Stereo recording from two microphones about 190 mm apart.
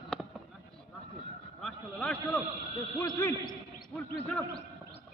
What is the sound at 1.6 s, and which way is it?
Speech, 5° left (ahead or behind).